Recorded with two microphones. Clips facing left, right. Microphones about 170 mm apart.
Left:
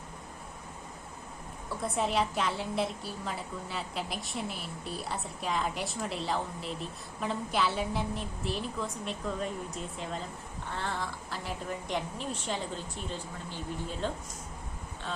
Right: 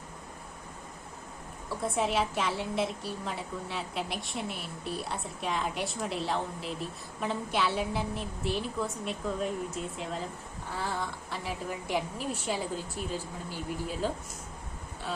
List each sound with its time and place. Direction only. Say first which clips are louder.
1.8 s a woman's voice: right 1 dB; centre (ahead or behind)